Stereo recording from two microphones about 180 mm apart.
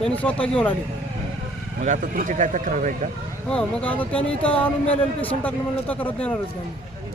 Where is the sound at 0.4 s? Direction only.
5° left (ahead or behind).